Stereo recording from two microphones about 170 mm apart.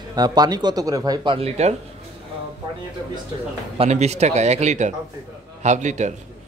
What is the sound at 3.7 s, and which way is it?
A man's voice, 40° right (ahead or behind).